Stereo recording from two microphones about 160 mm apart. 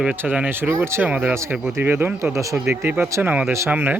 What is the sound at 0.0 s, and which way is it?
Speech, 10° right (ahead or behind).